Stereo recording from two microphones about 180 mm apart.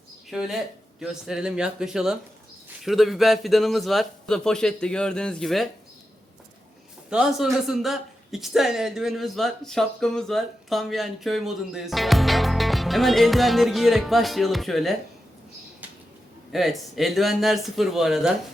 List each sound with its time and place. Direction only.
0.3 s speech: centre (ahead or behind)
7.1 s speech: 5° right (ahead or behind)
16.5 s speech: centre (ahead or behind)